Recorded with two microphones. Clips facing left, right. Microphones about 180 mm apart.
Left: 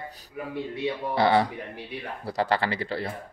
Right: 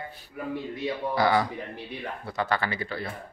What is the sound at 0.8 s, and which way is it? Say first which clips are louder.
Speech: left 1 dB; 25° left (ahead or behind).